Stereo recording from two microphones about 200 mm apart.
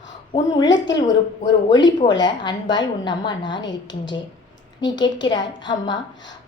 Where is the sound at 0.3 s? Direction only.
25° left (ahead or behind).